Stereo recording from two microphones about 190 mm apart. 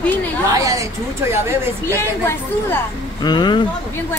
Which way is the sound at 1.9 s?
10° left (ahead or behind).